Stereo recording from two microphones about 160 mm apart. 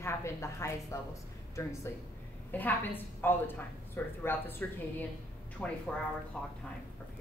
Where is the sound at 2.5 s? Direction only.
10° left (ahead or behind).